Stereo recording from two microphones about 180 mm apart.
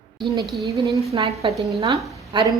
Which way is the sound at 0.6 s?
15° right (ahead or behind).